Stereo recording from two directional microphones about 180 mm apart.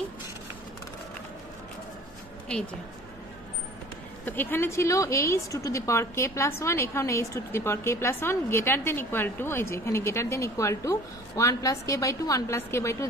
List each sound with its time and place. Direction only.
4.3 s a woman's voice: 10° left (ahead or behind)